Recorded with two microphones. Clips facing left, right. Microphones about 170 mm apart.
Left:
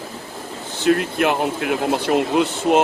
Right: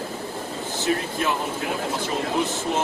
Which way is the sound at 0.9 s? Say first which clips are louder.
Left 7 dB; 75° left (ahead or behind).